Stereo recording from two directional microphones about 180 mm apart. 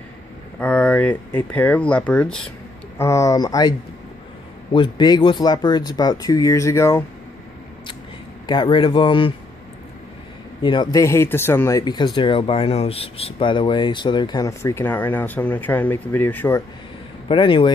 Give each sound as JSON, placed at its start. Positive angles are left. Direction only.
{"t": 0.6, "sound": "speech", "side_deg": 5}
{"t": 3.0, "sound": "speech", "side_deg": 15}
{"t": 4.7, "sound": "speech", "side_deg": 25}
{"t": 8.5, "sound": "speech", "side_deg": 25}
{"t": 10.6, "sound": "speech", "side_deg": 25}
{"t": 17.3, "sound": "speech", "side_deg": 30}